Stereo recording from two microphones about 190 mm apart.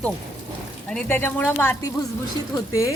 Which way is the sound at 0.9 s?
5° left (ahead or behind).